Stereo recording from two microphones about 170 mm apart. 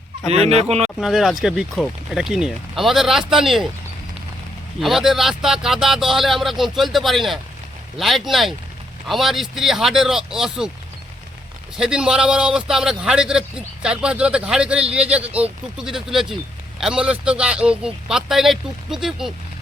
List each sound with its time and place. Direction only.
0.3 s speech: 40° right (ahead or behind)
0.9 s speech: 5° right (ahead or behind)
4.8 s speech: centre (ahead or behind)
11.8 s speech: 5° right (ahead or behind)